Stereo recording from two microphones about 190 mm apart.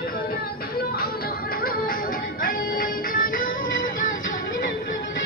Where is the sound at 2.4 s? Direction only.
50° left (ahead or behind).